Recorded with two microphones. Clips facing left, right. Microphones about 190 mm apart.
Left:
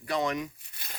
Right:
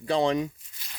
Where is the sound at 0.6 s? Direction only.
60° left (ahead or behind).